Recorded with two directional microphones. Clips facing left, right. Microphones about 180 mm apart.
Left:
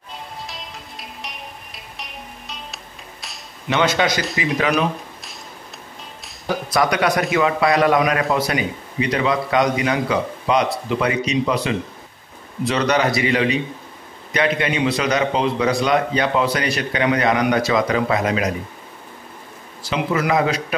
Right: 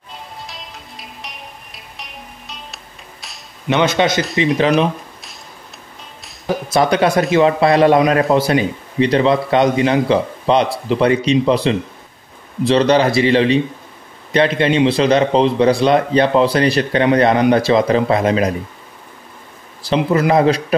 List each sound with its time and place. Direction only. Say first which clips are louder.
0.5 s music: even; centre (ahead or behind)
3.6 s a man's voice: right 4 dB; 20° right (ahead or behind)
6.2 s music: right 3 dB; centre (ahead or behind)
6.7 s a man's voice: right 5 dB; 30° right (ahead or behind)
19.8 s a man's voice: right 6 dB; 35° right (ahead or behind)